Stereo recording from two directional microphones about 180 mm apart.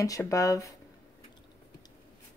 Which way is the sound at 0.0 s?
20° left (ahead or behind).